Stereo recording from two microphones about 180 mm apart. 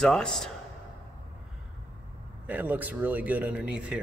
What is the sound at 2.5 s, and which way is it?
Speech, 10° right (ahead or behind).